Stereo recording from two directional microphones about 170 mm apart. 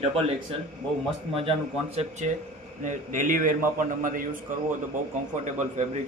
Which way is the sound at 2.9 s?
50° right (ahead or behind).